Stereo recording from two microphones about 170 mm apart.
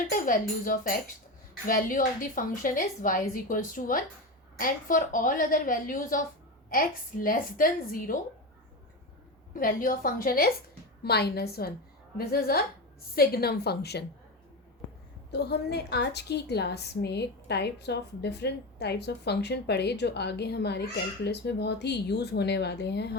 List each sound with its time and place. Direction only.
0.1 s a woman's voice: 55° left (ahead or behind)
9.5 s a woman's voice: 55° left (ahead or behind)
11.0 s a woman's voice: 70° left (ahead or behind)
15.3 s a woman's voice: 75° left (ahead or behind)